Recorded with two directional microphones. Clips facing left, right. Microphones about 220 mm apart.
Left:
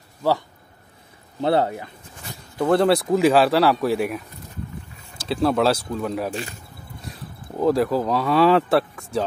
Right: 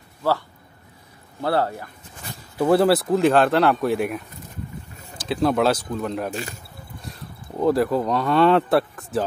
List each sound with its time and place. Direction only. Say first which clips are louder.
1.4 s speech: left 2 dB; 20° left (ahead or behind)
2.6 s speech: right 1 dB; 5° right (ahead or behind)
5.3 s speech: even; centre (ahead or behind)